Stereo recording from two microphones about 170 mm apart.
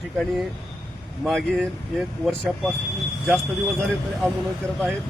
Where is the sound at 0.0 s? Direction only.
Centre (ahead or behind).